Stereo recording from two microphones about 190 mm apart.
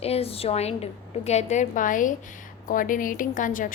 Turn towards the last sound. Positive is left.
turn(degrees=45)  # may be behind; listen again after turning